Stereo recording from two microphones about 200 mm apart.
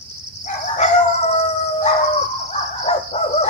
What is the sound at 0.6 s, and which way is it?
Chicken, 35° left (ahead or behind).